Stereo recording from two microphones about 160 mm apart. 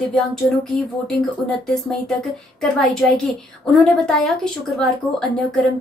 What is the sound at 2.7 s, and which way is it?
Speech, centre (ahead or behind).